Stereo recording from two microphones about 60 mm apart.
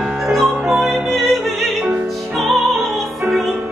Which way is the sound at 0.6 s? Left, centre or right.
Right.